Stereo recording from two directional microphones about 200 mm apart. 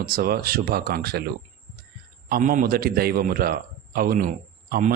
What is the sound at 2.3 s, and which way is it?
A man's voice, 40° right (ahead or behind).